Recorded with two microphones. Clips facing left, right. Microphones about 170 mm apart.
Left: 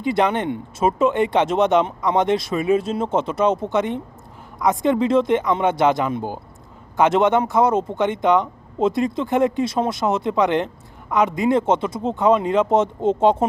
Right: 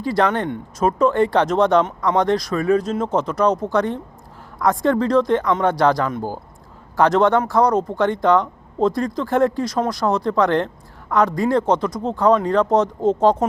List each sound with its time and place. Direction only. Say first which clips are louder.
0.0 s speech: even; 20° left (ahead or behind)